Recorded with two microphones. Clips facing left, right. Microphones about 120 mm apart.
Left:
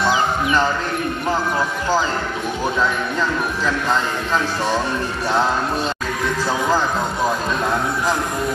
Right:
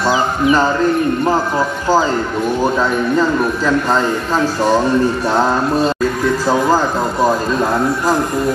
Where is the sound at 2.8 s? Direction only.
40° right (ahead or behind).